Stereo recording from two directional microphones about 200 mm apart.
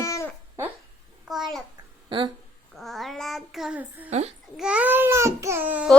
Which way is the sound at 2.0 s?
25° right (ahead or behind).